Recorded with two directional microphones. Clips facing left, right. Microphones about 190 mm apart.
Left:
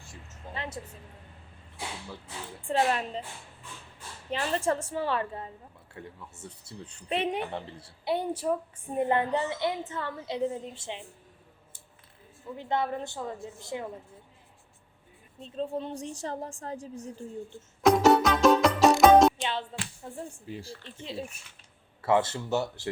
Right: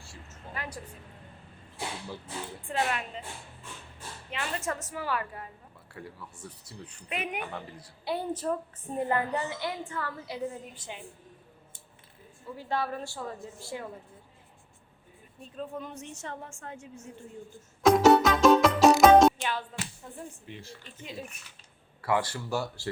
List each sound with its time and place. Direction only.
0.0 s a woman's voice: 20° left (ahead or behind)
2.6 s a woman's voice: 30° left (ahead or behind)
4.3 s a woman's voice: 35° left (ahead or behind)
8.3 s a woman's voice: 10° left (ahead or behind)
9.0 s a woman's voice: 20° left (ahead or behind)
12.5 s a woman's voice: 20° left (ahead or behind)
15.4 s a woman's voice: 25° left (ahead or behind)
17.8 s music: centre (ahead or behind)
19.4 s music: 25° left (ahead or behind)
20.5 s a woman's voice: 35° left (ahead or behind)